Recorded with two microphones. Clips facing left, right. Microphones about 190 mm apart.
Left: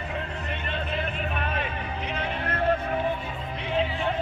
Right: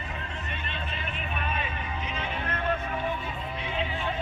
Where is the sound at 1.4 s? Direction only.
65° left (ahead or behind).